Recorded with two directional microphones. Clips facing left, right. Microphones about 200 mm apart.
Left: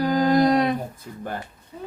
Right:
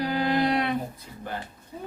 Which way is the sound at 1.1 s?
50° left (ahead or behind).